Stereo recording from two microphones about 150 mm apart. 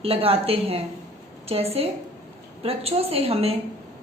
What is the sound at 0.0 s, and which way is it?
A woman's voice, 40° right (ahead or behind).